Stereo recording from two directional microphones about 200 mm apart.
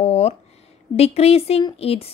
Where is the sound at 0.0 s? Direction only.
30° left (ahead or behind).